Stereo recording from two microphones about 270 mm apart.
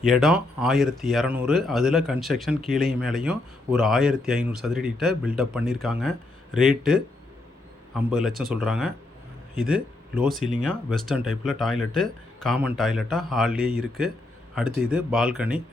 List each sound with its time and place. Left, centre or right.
0.0 s speech: centre
8.4 s a man's voice: centre
13.6 s speech: right
14.8 s speech: centre